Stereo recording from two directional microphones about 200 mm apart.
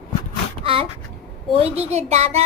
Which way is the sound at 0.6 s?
25° right (ahead or behind).